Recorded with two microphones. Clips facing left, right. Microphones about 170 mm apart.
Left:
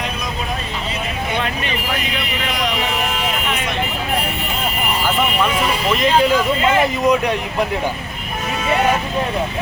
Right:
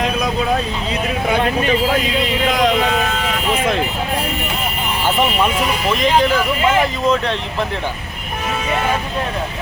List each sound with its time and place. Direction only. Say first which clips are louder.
7.0 s speech: left 1 dB; 15° left (ahead or behind)